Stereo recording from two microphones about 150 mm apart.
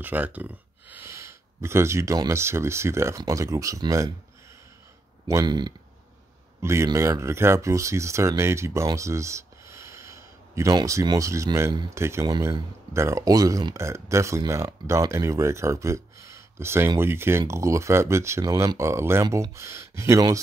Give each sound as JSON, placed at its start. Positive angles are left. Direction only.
{"t": 0.0, "sound": "speech", "side_deg": -10}
{"t": 5.3, "sound": "speech", "side_deg": -30}
{"t": 6.6, "sound": "speech", "side_deg": -20}